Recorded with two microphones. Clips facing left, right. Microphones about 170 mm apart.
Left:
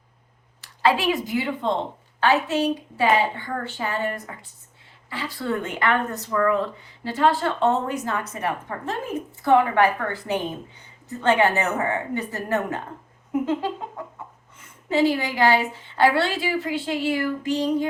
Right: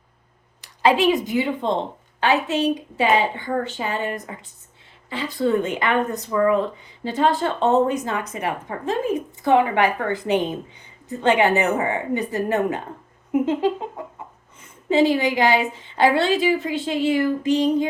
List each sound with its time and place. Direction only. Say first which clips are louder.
0.6 s a woman's voice: right 4 dB; 15° right (ahead or behind)
13.3 s a sound: right 3 dB; 20° right (ahead or behind)
14.6 s a woman's voice: right 3 dB; 20° right (ahead or behind)